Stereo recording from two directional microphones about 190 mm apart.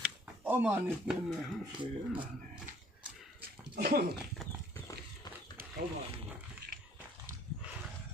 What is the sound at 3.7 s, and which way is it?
Speech, 50° right (ahead or behind).